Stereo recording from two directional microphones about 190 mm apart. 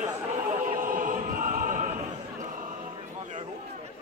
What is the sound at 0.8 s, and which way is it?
Opera, 45° right (ahead or behind).